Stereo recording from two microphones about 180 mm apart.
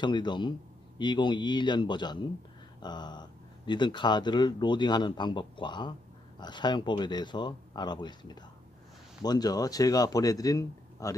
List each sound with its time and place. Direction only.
0.0 s speech: 25° left (ahead or behind)